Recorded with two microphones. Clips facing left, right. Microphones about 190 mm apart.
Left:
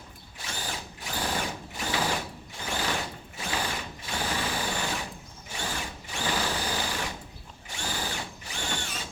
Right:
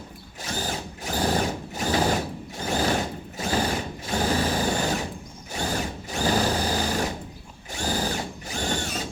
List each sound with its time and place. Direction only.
0.4 s drill: 40° right (ahead or behind)